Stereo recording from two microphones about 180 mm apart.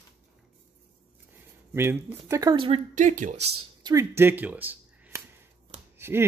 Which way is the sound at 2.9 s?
45° right (ahead or behind).